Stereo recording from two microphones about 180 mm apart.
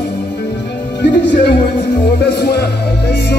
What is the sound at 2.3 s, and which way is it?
Music, 65° left (ahead or behind).